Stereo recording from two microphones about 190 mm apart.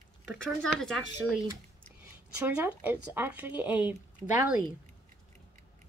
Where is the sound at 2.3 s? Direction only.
10° right (ahead or behind).